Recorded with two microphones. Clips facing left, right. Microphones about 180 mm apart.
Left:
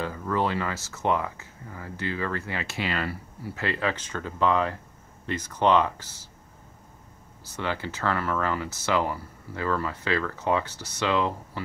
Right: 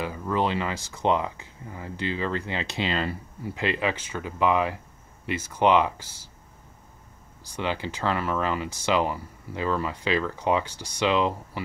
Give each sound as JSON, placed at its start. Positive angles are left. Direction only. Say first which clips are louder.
{"t": 0.0, "sound": "speech", "louder": "right 1 dB", "side_deg": -15}
{"t": 7.5, "sound": "speech", "louder": "right 1 dB", "side_deg": -15}